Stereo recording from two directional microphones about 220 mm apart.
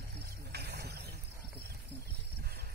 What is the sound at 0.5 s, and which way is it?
Vehicle, 45° right (ahead or behind).